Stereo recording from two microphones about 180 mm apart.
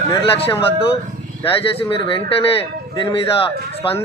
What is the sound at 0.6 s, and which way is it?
Speech, 30° left (ahead or behind).